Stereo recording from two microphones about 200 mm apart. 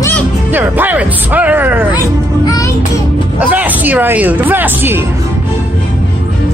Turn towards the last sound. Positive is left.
turn(degrees=-10)  # may be behind; listen again after turning